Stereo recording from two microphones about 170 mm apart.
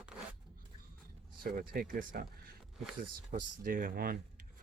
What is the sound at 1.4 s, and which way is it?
Speech, 55° right (ahead or behind).